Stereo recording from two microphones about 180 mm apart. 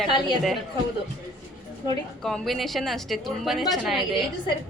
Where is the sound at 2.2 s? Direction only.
Centre (ahead or behind).